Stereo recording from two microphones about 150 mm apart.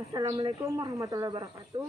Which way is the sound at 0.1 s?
30° right (ahead or behind).